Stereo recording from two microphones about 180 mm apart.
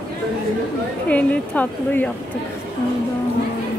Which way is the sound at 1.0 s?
5° left (ahead or behind).